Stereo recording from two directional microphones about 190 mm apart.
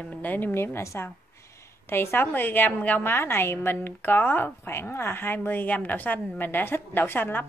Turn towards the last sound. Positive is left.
turn(degrees=10)  # may be behind; listen again after turning